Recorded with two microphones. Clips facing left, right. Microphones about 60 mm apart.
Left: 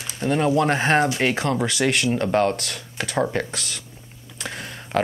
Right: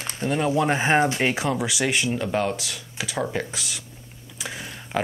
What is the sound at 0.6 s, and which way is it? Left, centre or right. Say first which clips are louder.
Speech: right 2 dB; centre.